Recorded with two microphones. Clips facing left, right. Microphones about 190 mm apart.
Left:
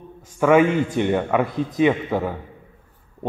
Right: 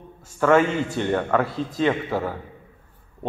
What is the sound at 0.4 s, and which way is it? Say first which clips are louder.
A man's voice: left 3 dB; 10° left (ahead or behind).